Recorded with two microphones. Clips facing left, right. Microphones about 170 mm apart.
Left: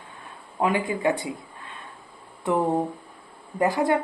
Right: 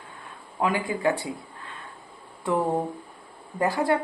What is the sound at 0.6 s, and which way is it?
Speech, 25° left (ahead or behind).